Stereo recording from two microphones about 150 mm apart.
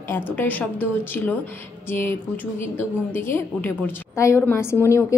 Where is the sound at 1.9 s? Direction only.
15° left (ahead or behind).